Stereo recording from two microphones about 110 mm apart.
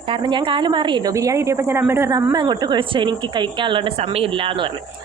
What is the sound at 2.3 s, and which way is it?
Speech, 40° right (ahead or behind).